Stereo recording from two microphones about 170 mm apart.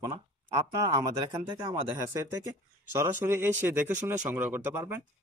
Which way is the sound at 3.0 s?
15° right (ahead or behind).